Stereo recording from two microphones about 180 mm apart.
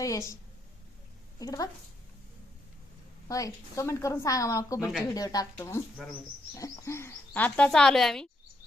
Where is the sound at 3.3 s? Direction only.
20° left (ahead or behind).